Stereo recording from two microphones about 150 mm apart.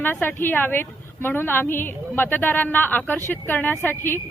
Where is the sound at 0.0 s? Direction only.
15° left (ahead or behind).